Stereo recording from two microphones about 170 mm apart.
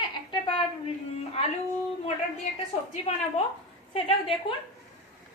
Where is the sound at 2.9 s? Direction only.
40° left (ahead or behind).